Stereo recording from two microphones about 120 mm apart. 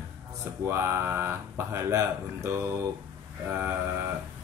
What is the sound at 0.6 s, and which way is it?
Speech, 20° right (ahead or behind).